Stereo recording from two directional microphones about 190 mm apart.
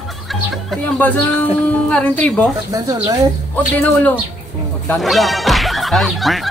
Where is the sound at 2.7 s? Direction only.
20° right (ahead or behind).